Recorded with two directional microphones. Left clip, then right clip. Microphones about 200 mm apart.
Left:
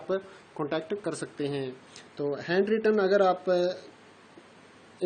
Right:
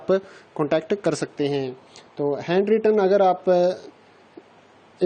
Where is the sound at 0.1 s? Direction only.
35° right (ahead or behind).